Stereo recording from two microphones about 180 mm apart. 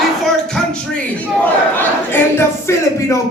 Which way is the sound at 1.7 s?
10° left (ahead or behind).